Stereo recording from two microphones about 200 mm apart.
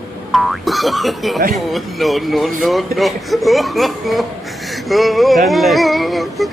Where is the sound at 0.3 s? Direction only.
Centre (ahead or behind).